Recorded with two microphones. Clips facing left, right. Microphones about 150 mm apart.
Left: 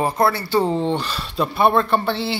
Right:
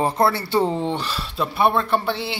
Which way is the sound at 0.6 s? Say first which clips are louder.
Left 3 dB; 10° right (ahead or behind).